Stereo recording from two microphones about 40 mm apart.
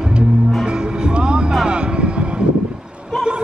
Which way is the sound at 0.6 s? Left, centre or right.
Right.